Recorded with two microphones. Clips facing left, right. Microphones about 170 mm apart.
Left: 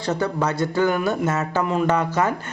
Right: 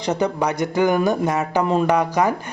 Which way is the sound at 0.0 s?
20° right (ahead or behind).